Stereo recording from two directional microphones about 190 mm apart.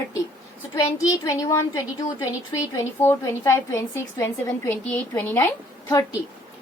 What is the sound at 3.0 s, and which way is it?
A woman's voice, 15° left (ahead or behind).